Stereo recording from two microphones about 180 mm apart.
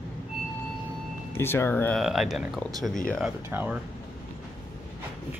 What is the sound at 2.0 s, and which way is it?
Speech, centre (ahead or behind).